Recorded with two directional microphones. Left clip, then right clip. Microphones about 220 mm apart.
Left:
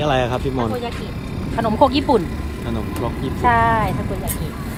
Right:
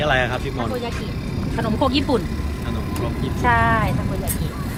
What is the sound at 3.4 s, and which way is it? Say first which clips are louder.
Speech: left 2 dB; 45° left (ahead or behind).